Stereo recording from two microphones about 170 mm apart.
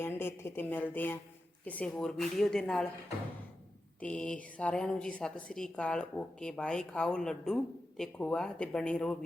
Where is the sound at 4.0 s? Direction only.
5° left (ahead or behind).